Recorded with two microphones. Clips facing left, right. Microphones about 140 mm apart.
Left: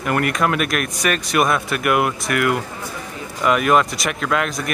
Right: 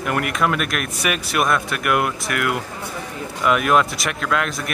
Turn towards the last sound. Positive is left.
turn(degrees=0)  # may be behind; listen again after turning